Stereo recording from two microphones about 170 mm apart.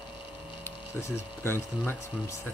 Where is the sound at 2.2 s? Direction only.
15° left (ahead or behind).